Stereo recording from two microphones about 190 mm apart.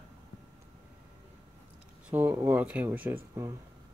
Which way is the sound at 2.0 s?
10° right (ahead or behind).